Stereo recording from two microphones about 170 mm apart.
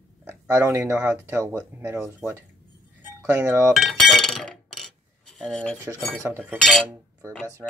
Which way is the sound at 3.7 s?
Centre (ahead or behind).